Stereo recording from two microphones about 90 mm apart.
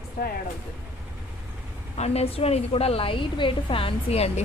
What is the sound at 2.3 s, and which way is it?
A woman's voice, 90° left.